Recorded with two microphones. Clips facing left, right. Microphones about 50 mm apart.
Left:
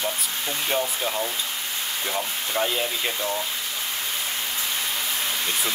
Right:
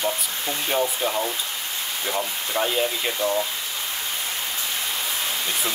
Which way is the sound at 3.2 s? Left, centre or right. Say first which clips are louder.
Right 4 dB; centre.